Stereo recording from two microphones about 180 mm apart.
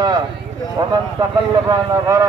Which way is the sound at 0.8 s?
25° right (ahead or behind).